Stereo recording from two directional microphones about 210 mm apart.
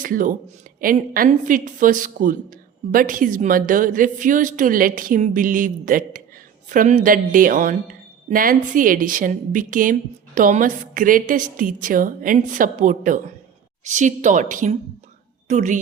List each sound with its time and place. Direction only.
0.0 s a woman's voice: 40° right (ahead or behind)